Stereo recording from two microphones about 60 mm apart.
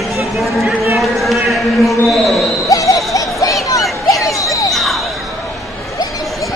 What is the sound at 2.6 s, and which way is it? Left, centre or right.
Music, left.